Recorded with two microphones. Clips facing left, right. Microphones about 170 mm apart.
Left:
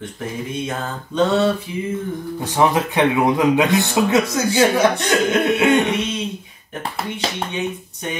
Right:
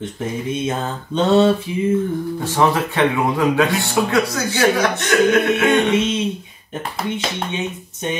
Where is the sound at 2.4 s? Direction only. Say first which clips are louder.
Left 1 dB; 15° left (ahead or behind).